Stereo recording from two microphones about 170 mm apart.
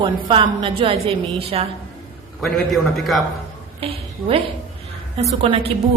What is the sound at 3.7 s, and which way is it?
A woman's voice, 35° right (ahead or behind).